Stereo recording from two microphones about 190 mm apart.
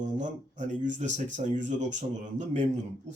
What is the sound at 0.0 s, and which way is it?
Speech, 40° right (ahead or behind).